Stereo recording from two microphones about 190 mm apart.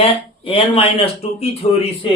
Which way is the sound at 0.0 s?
30° left (ahead or behind).